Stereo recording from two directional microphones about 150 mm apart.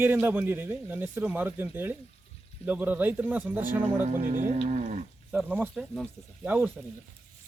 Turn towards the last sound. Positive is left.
turn(degrees=-10)  # may be behind; listen again after turning